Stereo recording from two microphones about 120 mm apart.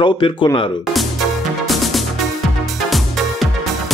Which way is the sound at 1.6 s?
Centre (ahead or behind).